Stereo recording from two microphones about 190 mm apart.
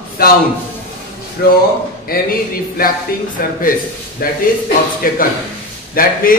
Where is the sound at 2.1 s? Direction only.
50° left (ahead or behind).